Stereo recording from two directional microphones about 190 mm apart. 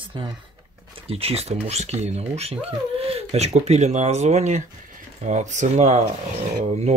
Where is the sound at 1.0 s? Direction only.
30° right (ahead or behind).